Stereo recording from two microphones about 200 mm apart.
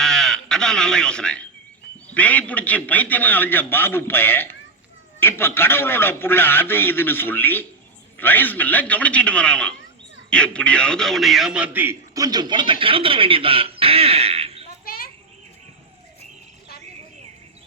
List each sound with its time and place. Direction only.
0.0 s a man's voice: centre (ahead or behind); by 14.7 s 30° right (ahead or behind)
14.8 s children playing: 50° left (ahead or behind)